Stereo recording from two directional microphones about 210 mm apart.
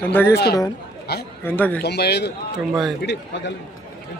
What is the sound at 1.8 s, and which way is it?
A man's voice, 50° left (ahead or behind).